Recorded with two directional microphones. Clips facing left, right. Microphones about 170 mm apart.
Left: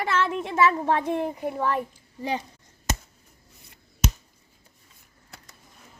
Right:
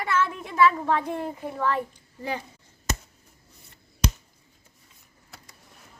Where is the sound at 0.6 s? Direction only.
20° left (ahead or behind).